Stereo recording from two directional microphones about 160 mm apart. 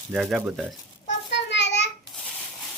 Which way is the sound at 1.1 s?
90° left.